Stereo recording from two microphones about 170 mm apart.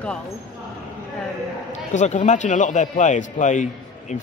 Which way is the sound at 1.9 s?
45° left (ahead or behind).